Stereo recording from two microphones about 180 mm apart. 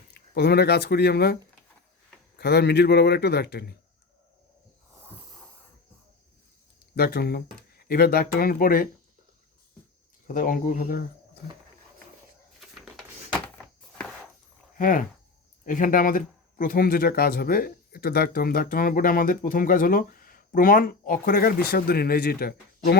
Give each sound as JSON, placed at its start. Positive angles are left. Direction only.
{"t": 0.1, "sound": "speech", "side_deg": 65}
{"t": 2.4, "sound": "a man's voice", "side_deg": 65}
{"t": 6.9, "sound": "a man's voice", "side_deg": 60}
{"t": 10.2, "sound": "speech", "side_deg": 50}
{"t": 12.5, "sound": "a sound", "side_deg": 0}
{"t": 14.8, "sound": "speech", "side_deg": 50}